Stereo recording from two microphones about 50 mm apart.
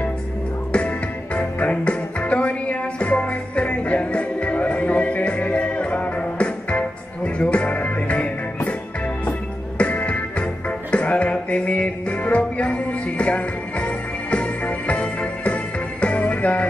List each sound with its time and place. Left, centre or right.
0.7 s music: left
9.8 s music: left